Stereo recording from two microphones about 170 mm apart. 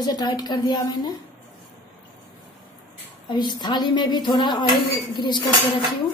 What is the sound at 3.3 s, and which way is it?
A woman's voice, 25° left (ahead or behind).